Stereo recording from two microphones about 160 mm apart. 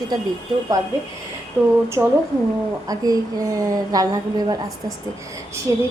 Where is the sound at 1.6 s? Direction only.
15° right (ahead or behind).